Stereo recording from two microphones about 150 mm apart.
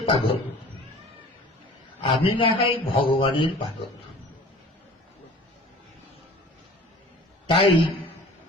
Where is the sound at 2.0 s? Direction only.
35° left (ahead or behind).